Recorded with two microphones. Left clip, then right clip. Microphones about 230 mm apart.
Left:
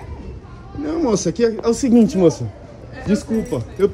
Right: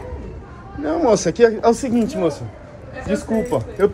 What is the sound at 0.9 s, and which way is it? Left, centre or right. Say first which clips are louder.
Speech: right 3 dB; left.